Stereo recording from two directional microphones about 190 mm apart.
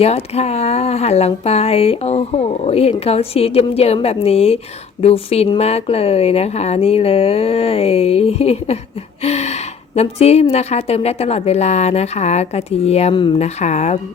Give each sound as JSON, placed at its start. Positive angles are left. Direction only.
{"t": 0.0, "sound": "speech", "side_deg": 35}